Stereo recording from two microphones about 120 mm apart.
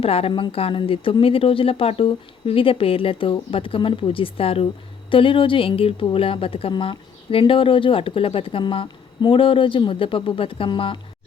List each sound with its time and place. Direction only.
0.0 s a woman's voice: 55° left (ahead or behind)